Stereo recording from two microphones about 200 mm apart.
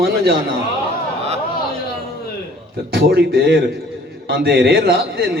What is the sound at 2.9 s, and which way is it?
A man's voice, 50° right (ahead or behind).